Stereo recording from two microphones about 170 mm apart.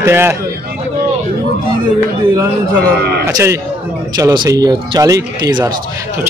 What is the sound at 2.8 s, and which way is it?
Speech, 70° right (ahead or behind).